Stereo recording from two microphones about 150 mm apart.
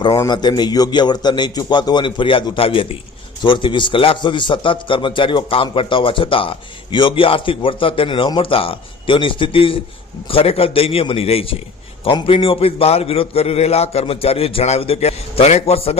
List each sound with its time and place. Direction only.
0.3 s a man's voice: 30° left (ahead or behind)